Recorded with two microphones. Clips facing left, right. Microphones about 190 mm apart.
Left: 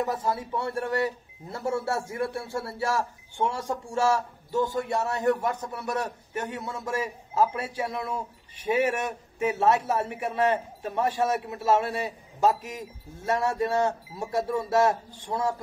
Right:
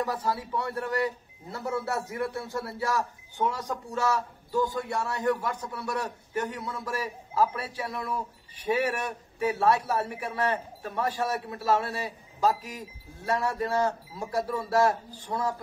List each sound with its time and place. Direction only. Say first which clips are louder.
0.0 s a man's voice: left 2 dB; 25° left (ahead or behind)